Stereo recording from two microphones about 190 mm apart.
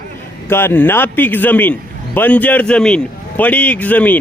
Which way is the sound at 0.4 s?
10° left (ahead or behind).